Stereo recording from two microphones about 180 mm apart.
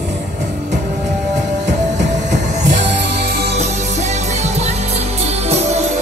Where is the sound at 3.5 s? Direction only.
40° right (ahead or behind).